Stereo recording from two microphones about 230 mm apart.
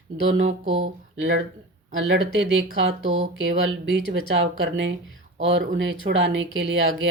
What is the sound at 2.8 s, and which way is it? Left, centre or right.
Speech, right.